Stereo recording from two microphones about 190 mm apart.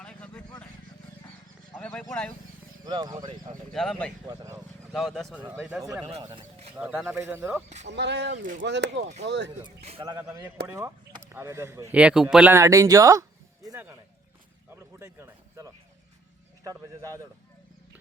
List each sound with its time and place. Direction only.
0.0 s a sound: 5° left (ahead or behind)
1.7 s a sound: 5° left (ahead or behind)
2.8 s speech: 20° right (ahead or behind)
3.7 s speech: centre (ahead or behind)
4.3 s a sound: 15° right (ahead or behind)
4.9 s speech: centre (ahead or behind)
5.4 s speech: 15° right (ahead or behind)
6.7 s speech: 5° right (ahead or behind)
7.9 s speech: 65° right (ahead or behind)
9.6 s speech: 30° right (ahead or behind)
10.7 s speech: 15° right (ahead or behind)
13.7 s a sound: 10° right (ahead or behind)
14.9 s speech: 15° right (ahead or behind)